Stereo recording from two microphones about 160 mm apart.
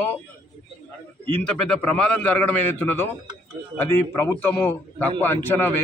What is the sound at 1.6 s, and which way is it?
A man's voice, 10° left (ahead or behind).